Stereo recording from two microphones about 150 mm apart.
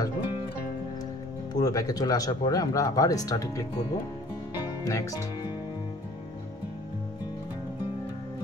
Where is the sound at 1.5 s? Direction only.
25° left (ahead or behind).